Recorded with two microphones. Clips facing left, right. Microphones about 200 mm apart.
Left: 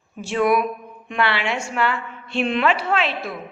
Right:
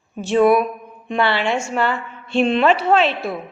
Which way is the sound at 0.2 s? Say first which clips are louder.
Right 5 dB; 25° right (ahead or behind).